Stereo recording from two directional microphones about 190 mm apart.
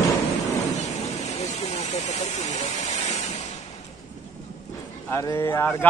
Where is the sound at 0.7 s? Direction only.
35° left (ahead or behind).